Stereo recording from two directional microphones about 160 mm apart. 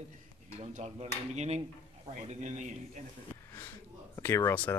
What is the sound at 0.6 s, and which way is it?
A man's voice, 45° right (ahead or behind).